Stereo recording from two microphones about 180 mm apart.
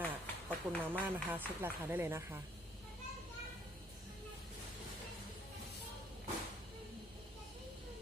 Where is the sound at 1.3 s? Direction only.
10° right (ahead or behind).